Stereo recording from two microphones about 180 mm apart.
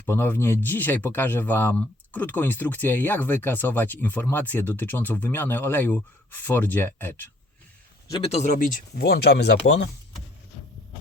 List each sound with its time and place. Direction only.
0.0 s speech: 10° left (ahead or behind)
8.2 s speech: 40° left (ahead or behind); by 9.9 s 80° left